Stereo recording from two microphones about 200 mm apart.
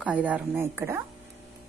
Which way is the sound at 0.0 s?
5° right (ahead or behind).